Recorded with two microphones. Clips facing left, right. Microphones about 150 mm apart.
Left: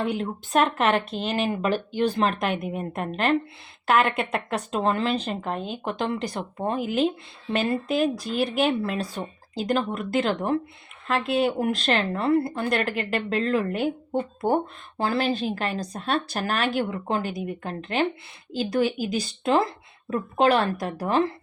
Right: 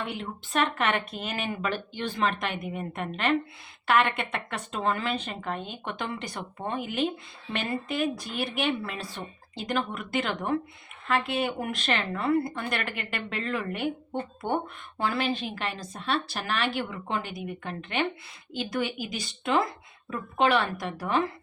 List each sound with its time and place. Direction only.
0.0 s a woman's voice: 40° left (ahead or behind)